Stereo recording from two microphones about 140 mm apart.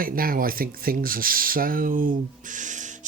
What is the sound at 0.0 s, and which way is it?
Speech, 90° right.